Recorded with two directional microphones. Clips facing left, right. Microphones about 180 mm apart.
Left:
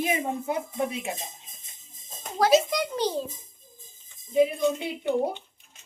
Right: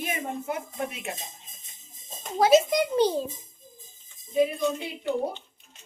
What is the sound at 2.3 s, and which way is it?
Speech, 25° right (ahead or behind).